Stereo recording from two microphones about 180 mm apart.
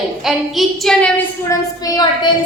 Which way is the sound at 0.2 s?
Centre (ahead or behind).